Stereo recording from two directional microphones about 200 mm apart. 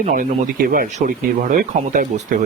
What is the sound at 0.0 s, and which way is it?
Speech, 45° right (ahead or behind).